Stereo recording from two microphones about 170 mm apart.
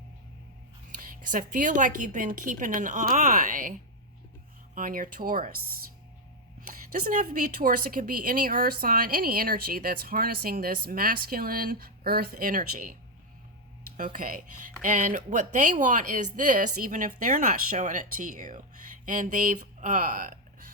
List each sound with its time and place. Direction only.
0.9 s speech: 50° right (ahead or behind)
6.6 s a woman's voice: 55° right (ahead or behind)